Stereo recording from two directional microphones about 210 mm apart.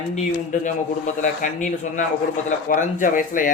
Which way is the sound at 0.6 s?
35° left (ahead or behind).